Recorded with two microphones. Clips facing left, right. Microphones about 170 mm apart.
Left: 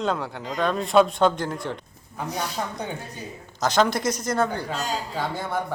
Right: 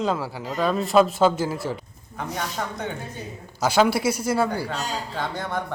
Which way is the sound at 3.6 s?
10° right (ahead or behind).